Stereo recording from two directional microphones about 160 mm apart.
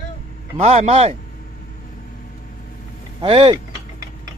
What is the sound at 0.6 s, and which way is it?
Speech, 40° right (ahead or behind).